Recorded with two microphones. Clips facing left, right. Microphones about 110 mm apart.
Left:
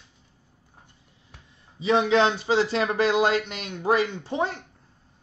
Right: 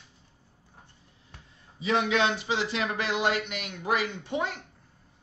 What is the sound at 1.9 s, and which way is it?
Speech, 30° left (ahead or behind).